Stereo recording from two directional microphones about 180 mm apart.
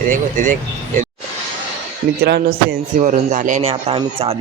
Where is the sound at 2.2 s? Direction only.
60° right (ahead or behind); by 4.4 s 35° right (ahead or behind).